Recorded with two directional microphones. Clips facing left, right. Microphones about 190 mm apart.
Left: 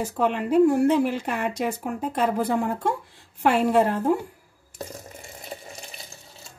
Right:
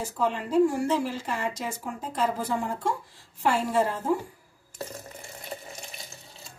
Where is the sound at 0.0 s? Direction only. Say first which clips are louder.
Left 4 dB; 60° left (ahead or behind).